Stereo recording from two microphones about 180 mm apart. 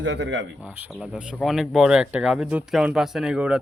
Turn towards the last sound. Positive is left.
turn(degrees=-5)  # may be behind; listen again after turning